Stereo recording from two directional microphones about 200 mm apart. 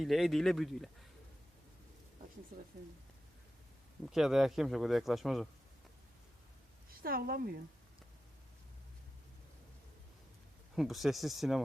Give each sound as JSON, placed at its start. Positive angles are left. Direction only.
{"t": 0.0, "sound": "speech", "side_deg": 0}
{"t": 2.5, "sound": "a woman's voice", "side_deg": -45}
{"t": 4.1, "sound": "speech", "side_deg": 0}
{"t": 7.0, "sound": "a woman's voice", "side_deg": -50}
{"t": 10.8, "sound": "speech", "side_deg": 0}